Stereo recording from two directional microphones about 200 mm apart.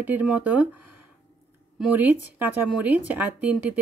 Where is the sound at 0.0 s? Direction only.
5° right (ahead or behind).